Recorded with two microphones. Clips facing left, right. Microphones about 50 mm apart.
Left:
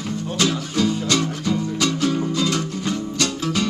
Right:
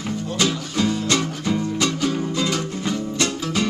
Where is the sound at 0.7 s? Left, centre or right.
Centre.